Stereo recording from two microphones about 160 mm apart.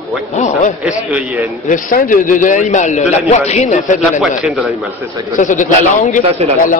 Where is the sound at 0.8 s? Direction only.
5° right (ahead or behind).